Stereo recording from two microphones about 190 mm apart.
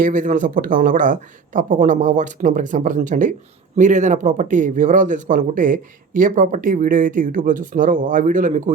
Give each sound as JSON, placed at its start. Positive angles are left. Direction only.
{"t": 0.0, "sound": "speech", "side_deg": -45}